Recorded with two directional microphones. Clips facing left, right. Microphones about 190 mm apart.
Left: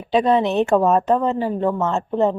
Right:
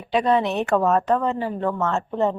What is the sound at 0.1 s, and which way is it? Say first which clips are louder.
A woman's voice: left 3 dB; 25° left (ahead or behind).